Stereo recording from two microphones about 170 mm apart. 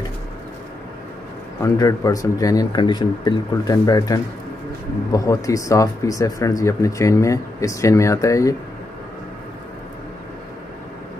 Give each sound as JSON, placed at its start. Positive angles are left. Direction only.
{"t": 1.6, "sound": "speech", "side_deg": 20}